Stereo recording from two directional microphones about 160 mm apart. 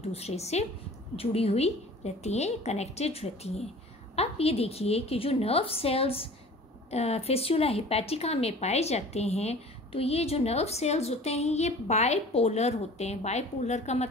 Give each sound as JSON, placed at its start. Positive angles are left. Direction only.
{"t": 0.1, "sound": "a woman's voice", "side_deg": 40}